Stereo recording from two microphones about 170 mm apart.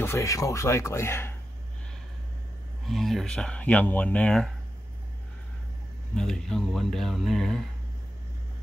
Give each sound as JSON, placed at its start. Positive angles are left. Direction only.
{"t": 0.0, "sound": "speech", "side_deg": 15}
{"t": 2.9, "sound": "speech", "side_deg": 0}
{"t": 6.1, "sound": "speech", "side_deg": 5}